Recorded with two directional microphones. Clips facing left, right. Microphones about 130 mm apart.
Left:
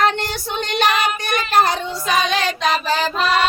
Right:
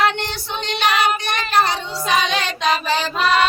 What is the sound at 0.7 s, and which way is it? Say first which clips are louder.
Child singing: even; 45° left (ahead or behind).